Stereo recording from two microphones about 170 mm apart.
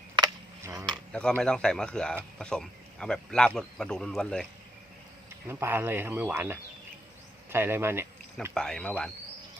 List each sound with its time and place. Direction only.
0.2 s a sound: 20° right (ahead or behind)
1.1 s speech: 5° left (ahead or behind)
5.5 s speech: 15° right (ahead or behind)
8.5 s speech: 5° left (ahead or behind)